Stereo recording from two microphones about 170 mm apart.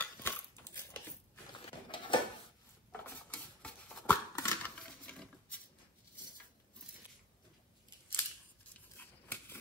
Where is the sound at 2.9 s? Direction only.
10° left (ahead or behind).